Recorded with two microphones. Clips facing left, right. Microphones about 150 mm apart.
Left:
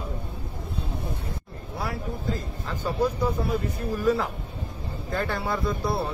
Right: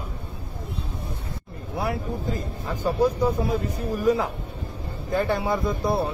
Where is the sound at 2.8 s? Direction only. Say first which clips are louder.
Right 4 dB; 10° right (ahead or behind).